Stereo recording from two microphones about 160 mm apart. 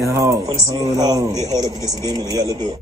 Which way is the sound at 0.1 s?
20° right (ahead or behind).